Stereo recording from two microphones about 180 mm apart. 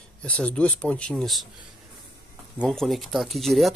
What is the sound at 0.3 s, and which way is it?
Speech, 5° left (ahead or behind).